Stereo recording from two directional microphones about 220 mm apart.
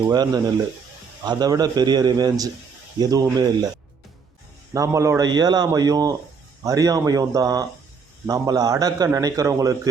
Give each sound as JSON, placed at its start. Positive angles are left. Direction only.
{"t": 0.1, "sound": "a man's voice", "side_deg": -20}
{"t": 4.7, "sound": "a man's voice", "side_deg": -15}